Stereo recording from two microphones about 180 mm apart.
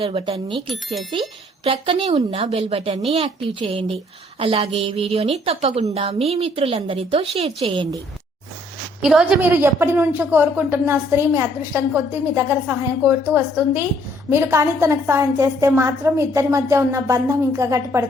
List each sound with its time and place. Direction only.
0.0 s speech: 30° right (ahead or behind)
0.7 s speech: centre (ahead or behind)
1.6 s a woman's voice: 30° right (ahead or behind)
9.0 s a woman's voice: 5° right (ahead or behind)